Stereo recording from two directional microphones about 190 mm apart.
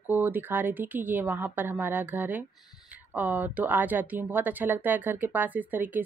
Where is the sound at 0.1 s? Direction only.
10° right (ahead or behind).